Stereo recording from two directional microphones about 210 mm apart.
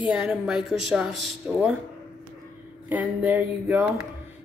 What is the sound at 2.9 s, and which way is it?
Speech, 10° right (ahead or behind).